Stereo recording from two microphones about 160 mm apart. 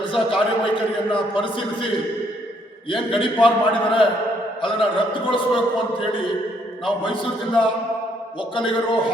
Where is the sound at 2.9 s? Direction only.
35° left (ahead or behind).